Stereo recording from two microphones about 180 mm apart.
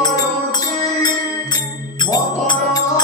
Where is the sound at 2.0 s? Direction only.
25° left (ahead or behind).